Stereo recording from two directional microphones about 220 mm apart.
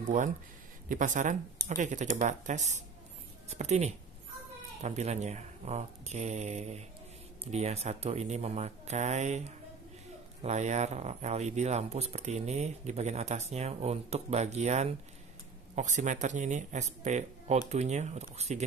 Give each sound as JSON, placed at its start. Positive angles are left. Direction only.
{"t": 0.0, "sound": "speech", "side_deg": -35}